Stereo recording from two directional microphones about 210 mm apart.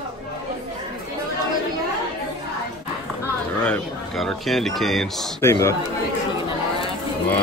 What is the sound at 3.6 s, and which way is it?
Speech, 5° left (ahead or behind).